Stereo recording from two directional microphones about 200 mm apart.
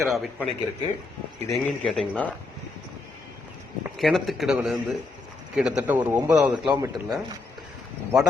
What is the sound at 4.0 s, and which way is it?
A man's voice, centre (ahead or behind).